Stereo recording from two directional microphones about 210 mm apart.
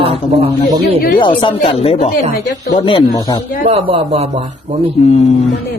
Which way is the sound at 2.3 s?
45° left (ahead or behind).